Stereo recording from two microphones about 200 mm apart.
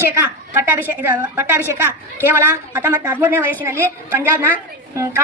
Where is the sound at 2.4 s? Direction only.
10° right (ahead or behind).